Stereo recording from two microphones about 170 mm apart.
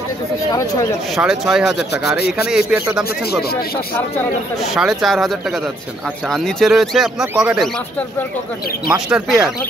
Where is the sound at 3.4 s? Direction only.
65° left (ahead or behind).